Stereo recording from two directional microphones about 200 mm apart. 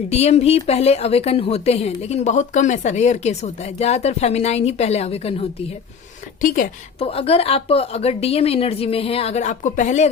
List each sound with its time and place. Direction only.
0.1 s a woman's voice: 30° left (ahead or behind)
6.4 s a woman's voice: 45° left (ahead or behind)
7.0 s a woman's voice: 30° left (ahead or behind)